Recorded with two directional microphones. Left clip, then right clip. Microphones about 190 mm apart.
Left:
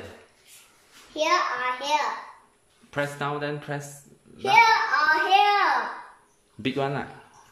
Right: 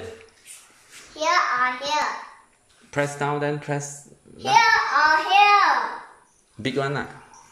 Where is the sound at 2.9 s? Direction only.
Centre (ahead or behind).